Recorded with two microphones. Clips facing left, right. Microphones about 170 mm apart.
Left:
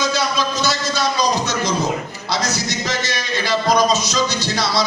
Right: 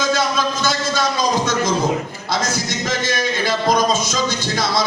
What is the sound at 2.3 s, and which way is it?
A man's voice, 50° right (ahead or behind).